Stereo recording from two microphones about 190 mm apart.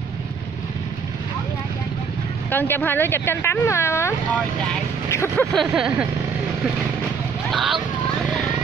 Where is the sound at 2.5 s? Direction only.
10° left (ahead or behind).